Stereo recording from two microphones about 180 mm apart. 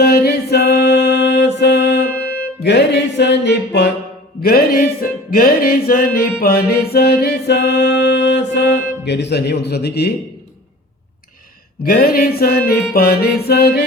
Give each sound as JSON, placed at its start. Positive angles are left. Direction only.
{"t": 0.0, "sound": "music", "side_deg": 60}
{"t": 4.4, "sound": "music", "side_deg": 55}
{"t": 11.9, "sound": "music", "side_deg": 55}